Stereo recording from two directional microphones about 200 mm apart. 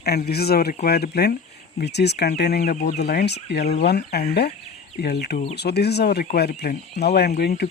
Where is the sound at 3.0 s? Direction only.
55° left (ahead or behind).